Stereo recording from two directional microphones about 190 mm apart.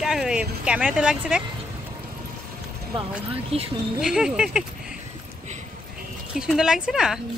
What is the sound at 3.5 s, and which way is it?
Speech, 30° right (ahead or behind).